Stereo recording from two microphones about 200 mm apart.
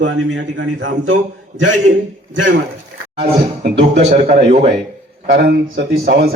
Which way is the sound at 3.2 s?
40° right (ahead or behind).